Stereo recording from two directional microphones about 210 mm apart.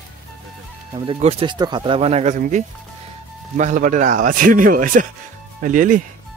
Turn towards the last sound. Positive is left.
turn(degrees=-40)  # may be behind; listen again after turning